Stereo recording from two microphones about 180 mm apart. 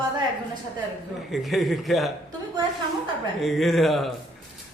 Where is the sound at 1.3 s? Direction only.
Centre (ahead or behind).